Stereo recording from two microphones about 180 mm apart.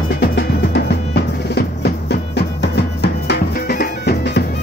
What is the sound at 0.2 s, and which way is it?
Music, 65° left (ahead or behind).